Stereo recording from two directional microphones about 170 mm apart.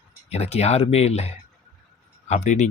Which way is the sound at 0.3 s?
40° left (ahead or behind).